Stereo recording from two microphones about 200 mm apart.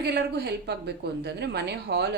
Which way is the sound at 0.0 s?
55° right (ahead or behind).